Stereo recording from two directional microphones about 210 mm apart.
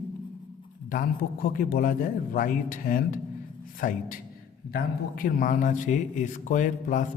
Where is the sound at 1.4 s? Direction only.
45° left (ahead or behind).